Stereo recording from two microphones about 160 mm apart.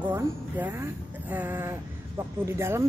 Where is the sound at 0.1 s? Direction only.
15° right (ahead or behind).